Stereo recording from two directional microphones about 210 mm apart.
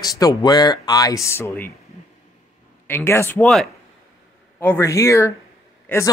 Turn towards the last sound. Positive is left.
turn(degrees=10)  # may be behind; listen again after turning